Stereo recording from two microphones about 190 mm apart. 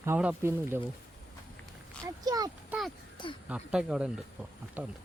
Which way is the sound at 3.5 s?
5° right (ahead or behind).